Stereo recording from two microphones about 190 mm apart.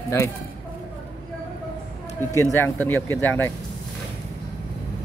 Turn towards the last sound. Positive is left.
turn(degrees=10)  # may be behind; listen again after turning